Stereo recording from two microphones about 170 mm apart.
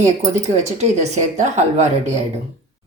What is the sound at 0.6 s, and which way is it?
Speech, 40° right (ahead or behind).